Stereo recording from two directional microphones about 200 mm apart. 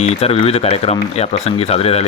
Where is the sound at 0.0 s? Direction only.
30° left (ahead or behind).